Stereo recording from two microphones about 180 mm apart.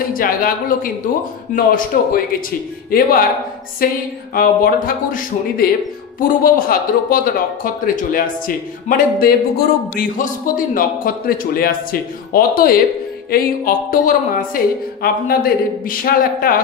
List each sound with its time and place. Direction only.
0.1 s a woman's voice: 50° left (ahead or behind)